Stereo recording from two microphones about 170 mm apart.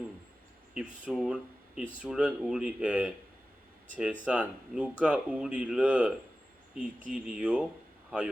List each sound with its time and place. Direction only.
0.7 s speech: 5° right (ahead or behind)